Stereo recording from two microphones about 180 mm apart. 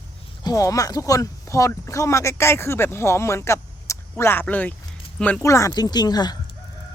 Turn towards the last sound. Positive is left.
turn(degrees=20)  # may be behind; listen again after turning